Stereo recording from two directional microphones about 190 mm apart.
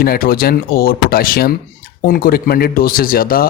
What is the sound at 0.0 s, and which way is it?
Speech, 50° left (ahead or behind).